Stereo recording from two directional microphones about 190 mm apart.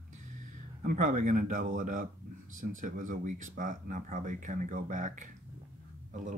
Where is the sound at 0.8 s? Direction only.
45° right (ahead or behind).